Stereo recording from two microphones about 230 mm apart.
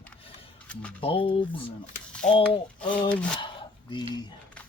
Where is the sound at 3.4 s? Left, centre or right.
Centre.